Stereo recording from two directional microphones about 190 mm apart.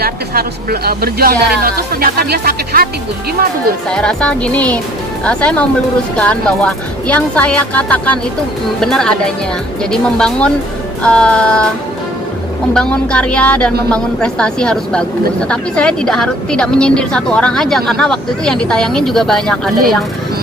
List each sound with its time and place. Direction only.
0.0 s speech: 55° right (ahead or behind)
3.8 s speech: 5° left (ahead or behind)
12.7 s speech: 5° left (ahead or behind)